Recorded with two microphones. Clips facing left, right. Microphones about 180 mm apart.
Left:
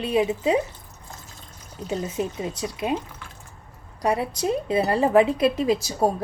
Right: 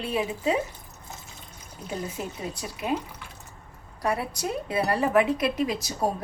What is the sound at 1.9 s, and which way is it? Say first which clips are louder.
Speech: left 6 dB; 20° left (ahead or behind).